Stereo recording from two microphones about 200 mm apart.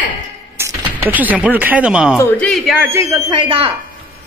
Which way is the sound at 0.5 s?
15° right (ahead or behind).